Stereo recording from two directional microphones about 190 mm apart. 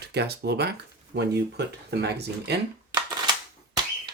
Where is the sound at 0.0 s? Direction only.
60° right (ahead or behind).